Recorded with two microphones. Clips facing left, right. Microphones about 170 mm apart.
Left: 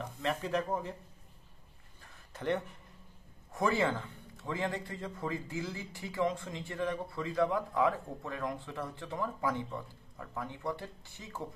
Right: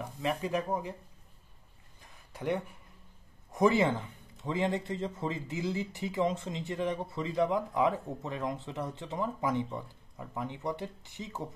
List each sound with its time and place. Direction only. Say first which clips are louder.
0.0 s speech: right 2 dB; 10° right (ahead or behind)
2.3 s a man's voice: right 1 dB; 10° right (ahead or behind)